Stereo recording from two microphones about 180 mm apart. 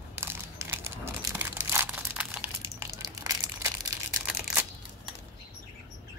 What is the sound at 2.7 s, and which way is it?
Crushing, 20° right (ahead or behind).